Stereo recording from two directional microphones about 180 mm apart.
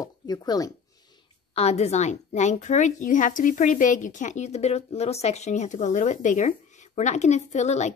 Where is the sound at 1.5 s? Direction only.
35° left (ahead or behind).